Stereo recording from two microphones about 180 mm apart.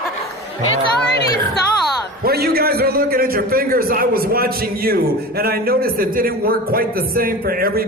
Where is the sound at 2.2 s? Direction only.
60° right (ahead or behind).